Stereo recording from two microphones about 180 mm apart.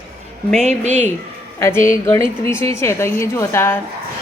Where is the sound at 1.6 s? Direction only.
15° left (ahead or behind).